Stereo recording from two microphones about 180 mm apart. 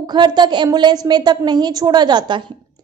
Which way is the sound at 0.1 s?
25° right (ahead or behind).